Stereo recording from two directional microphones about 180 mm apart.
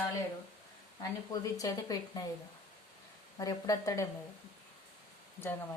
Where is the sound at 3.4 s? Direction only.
20° left (ahead or behind).